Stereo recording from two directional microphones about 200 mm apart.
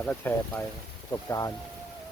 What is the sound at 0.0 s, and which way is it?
Speech, 10° left (ahead or behind).